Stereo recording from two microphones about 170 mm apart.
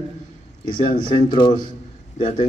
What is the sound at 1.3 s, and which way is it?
Speech, 25° left (ahead or behind).